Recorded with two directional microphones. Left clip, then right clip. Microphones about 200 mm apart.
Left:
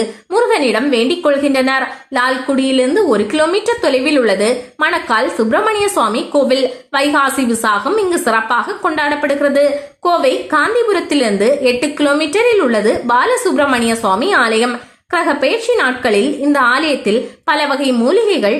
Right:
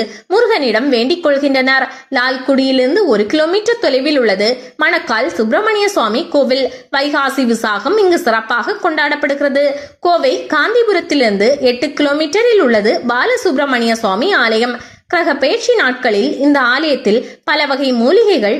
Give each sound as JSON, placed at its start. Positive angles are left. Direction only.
{"t": 0.0, "sound": "a woman's voice", "side_deg": -15}